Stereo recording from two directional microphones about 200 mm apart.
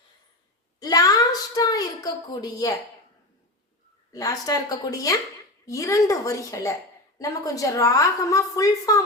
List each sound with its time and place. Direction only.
0.8 s a woman's voice: 20° left (ahead or behind)
4.1 s a woman's voice: 20° left (ahead or behind)